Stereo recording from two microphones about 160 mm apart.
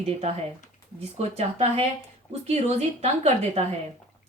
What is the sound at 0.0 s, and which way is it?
Speech, 40° right (ahead or behind).